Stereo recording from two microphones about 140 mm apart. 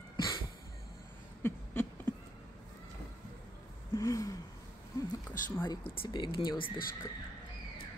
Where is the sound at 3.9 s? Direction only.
20° left (ahead or behind).